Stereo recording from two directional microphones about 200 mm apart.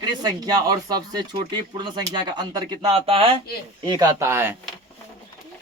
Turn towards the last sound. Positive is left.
turn(degrees=-10)  # may be behind; listen again after turning